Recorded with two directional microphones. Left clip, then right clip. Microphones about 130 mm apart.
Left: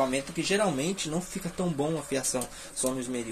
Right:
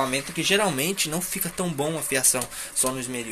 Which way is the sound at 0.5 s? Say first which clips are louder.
Right 4 dB; 5° right (ahead or behind).